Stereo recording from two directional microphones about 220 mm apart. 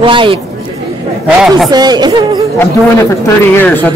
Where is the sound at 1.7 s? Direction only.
20° right (ahead or behind).